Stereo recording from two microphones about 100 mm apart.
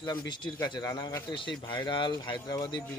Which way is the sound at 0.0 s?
45° left (ahead or behind).